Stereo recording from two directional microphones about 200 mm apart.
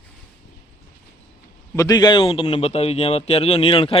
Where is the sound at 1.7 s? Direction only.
20° left (ahead or behind).